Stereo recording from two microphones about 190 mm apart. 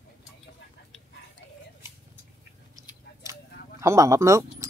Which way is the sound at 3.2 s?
15° right (ahead or behind).